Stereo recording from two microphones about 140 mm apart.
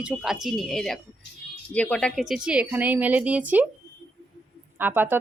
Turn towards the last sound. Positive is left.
turn(degrees=-15)  # may be behind; listen again after turning